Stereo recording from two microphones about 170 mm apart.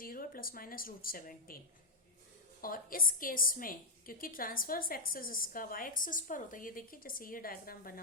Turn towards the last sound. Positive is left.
turn(degrees=60)  # may be behind; listen again after turning